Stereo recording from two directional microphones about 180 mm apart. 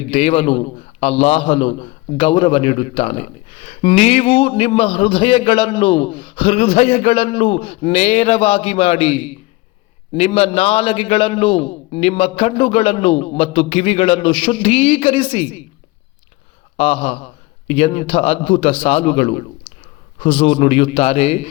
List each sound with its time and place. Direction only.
0.1 s a man's voice: 35° left (ahead or behind)
16.7 s a man's voice: 35° left (ahead or behind)